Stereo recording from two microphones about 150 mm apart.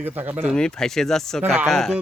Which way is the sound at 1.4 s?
15° right (ahead or behind).